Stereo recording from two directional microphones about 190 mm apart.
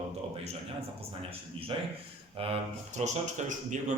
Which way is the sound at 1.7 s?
25° right (ahead or behind).